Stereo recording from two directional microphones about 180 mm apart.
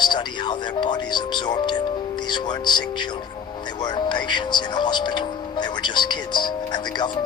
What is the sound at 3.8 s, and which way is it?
Music, 25° left (ahead or behind).